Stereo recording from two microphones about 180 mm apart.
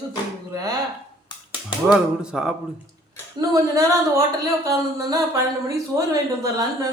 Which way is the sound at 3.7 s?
20° right (ahead or behind).